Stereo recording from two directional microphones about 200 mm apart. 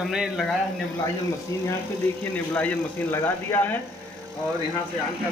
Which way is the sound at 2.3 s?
5° left (ahead or behind).